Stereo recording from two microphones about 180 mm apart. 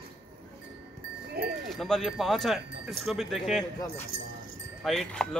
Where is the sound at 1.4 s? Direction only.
60° right (ahead or behind).